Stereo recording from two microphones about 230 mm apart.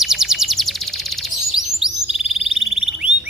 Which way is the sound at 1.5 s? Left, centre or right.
Centre.